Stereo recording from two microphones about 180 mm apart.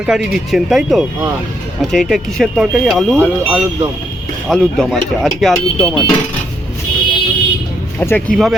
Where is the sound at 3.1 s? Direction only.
10° right (ahead or behind).